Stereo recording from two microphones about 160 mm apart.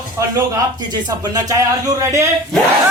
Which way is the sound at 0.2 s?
20° right (ahead or behind).